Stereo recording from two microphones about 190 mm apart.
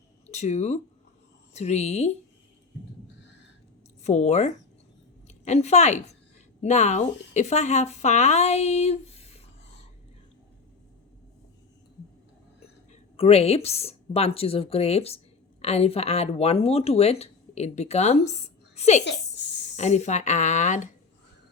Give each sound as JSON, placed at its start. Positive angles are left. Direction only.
{"t": 0.3, "sound": "speech", "side_deg": 35}
{"t": 4.0, "sound": "a woman's voice", "side_deg": 35}
{"t": 12.9, "sound": "a woman's voice", "side_deg": 30}